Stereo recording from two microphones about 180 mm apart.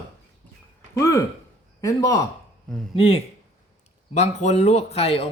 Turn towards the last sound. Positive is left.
turn(degrees=35)  # may be behind; listen again after turning